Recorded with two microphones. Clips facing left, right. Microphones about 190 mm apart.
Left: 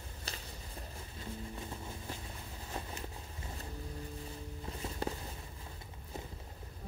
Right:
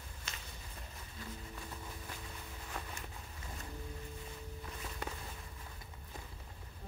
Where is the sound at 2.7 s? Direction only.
25° left (ahead or behind).